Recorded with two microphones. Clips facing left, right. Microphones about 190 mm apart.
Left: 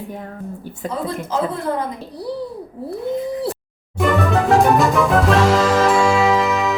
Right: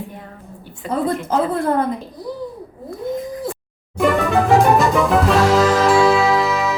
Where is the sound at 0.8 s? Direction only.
45° left (ahead or behind).